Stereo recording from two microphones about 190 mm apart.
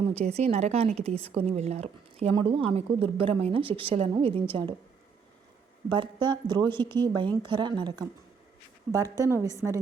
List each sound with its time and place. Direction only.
0.0 s speech: 35° right (ahead or behind)
5.9 s a woman's voice: 25° right (ahead or behind)